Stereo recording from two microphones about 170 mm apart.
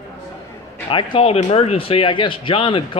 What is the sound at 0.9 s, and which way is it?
Speech, 30° left (ahead or behind).